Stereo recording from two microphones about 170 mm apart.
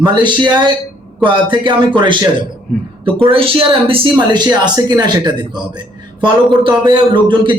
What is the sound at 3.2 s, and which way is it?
A man's voice, 30° right (ahead or behind).